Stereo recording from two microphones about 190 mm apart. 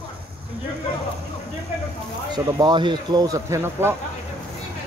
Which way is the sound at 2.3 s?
25° right (ahead or behind).